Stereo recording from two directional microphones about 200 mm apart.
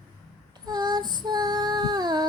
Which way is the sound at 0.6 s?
20° right (ahead or behind).